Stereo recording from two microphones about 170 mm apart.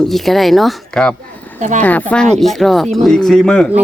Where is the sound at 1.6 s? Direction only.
45° right (ahead or behind).